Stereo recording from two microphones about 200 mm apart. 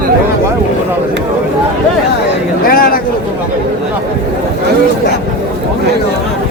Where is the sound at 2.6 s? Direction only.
45° left (ahead or behind).